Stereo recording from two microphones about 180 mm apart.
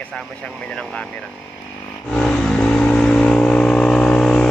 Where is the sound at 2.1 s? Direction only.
5° left (ahead or behind).